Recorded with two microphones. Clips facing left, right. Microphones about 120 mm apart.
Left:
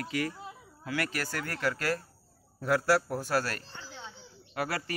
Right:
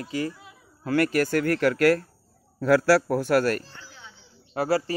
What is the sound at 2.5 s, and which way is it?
A man's voice, 90° right.